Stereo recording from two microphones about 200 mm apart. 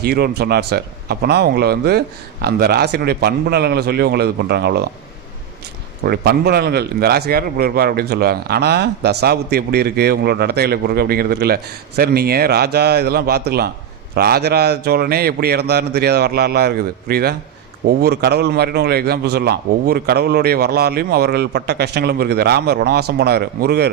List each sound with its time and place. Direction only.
0.0 s a man's voice: 50° right (ahead or behind)
6.0 s a man's voice: 55° right (ahead or behind)